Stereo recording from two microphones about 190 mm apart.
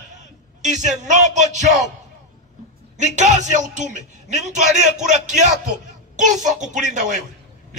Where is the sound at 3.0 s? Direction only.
40° right (ahead or behind).